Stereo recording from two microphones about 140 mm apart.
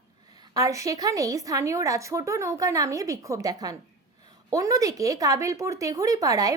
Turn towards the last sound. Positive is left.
turn(degrees=-25)  # may be behind; listen again after turning